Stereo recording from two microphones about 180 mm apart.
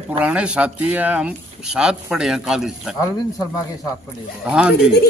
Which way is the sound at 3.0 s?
20° left (ahead or behind).